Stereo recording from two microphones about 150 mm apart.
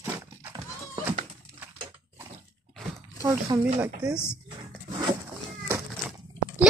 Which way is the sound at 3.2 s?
20° right (ahead or behind).